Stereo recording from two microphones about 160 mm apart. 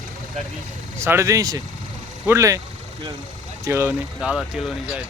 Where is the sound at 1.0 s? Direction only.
15° right (ahead or behind).